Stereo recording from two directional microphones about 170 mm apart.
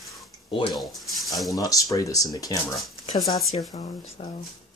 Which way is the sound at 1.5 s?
20° left (ahead or behind).